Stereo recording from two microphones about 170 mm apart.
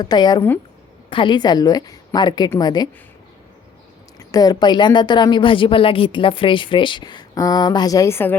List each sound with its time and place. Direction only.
0.0 s a woman's voice: 25° left (ahead or behind)
4.2 s a woman's voice: 20° left (ahead or behind)